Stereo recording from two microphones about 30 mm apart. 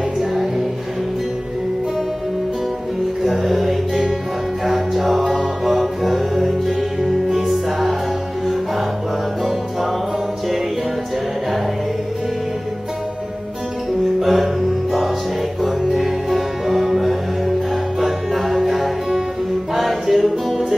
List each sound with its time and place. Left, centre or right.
0.2 s music: centre
3.3 s music: centre
7.2 s music: centre
14.2 s music: centre